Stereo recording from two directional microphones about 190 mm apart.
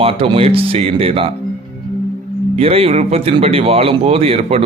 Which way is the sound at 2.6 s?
30° right (ahead or behind).